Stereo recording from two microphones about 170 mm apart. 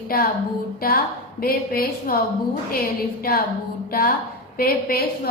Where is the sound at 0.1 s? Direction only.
60° left (ahead or behind).